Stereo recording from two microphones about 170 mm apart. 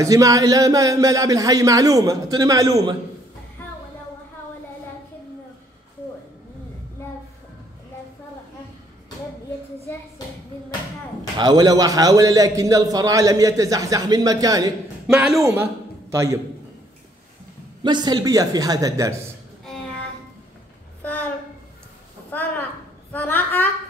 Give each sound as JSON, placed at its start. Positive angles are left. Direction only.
{"t": 0.0, "sound": "a man's voice", "side_deg": -20}
{"t": 11.3, "sound": "a man's voice", "side_deg": -25}
{"t": 15.0, "sound": "speech", "side_deg": -5}
{"t": 15.4, "sound": "a man's voice", "side_deg": -15}
{"t": 17.8, "sound": "a man's voice", "side_deg": -25}
{"t": 19.6, "sound": "music", "side_deg": 5}
{"t": 21.0, "sound": "a sound", "side_deg": 10}
{"t": 22.3, "sound": "a sound", "side_deg": 10}
{"t": 23.1, "sound": "a woman's voice", "side_deg": 10}